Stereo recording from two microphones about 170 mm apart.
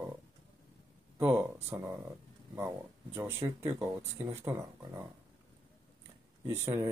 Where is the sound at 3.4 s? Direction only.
20° right (ahead or behind).